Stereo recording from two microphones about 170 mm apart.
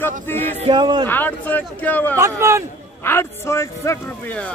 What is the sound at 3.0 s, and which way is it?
Speech, 15° left (ahead or behind).